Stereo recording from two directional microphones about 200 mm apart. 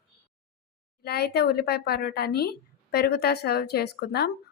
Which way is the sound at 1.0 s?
50° left (ahead or behind).